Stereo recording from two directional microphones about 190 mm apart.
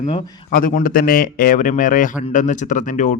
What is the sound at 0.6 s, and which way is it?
Speech, 45° left (ahead or behind).